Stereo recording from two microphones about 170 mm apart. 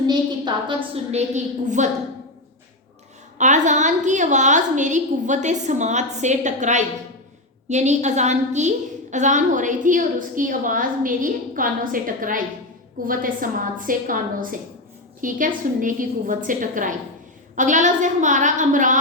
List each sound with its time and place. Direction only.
0.1 s a woman's voice: 25° right (ahead or behind)
1.1 s a woman's voice: 45° right (ahead or behind)
3.3 s a woman's voice: 45° right (ahead or behind)
15.2 s a woman's voice: 50° right (ahead or behind)